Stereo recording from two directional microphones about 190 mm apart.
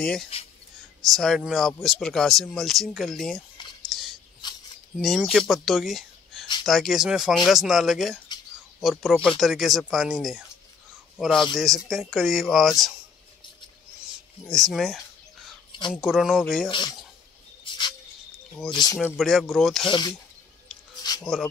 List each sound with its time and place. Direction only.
0.0 s a man's voice: 5° left (ahead or behind)
3.9 s a sound: centre (ahead or behind)
4.9 s a man's voice: centre (ahead or behind)
14.5 s a man's voice: centre (ahead or behind)
16.6 s speech: 25° left (ahead or behind)
17.6 s a sound: 25° left (ahead or behind)
18.7 s speech: 20° left (ahead or behind)
19.1 s a man's voice: centre (ahead or behind)
19.8 s speech: 25° left (ahead or behind)
21.0 s a sound: 20° left (ahead or behind)